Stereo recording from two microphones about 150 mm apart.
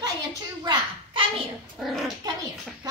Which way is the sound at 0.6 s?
25° right (ahead or behind).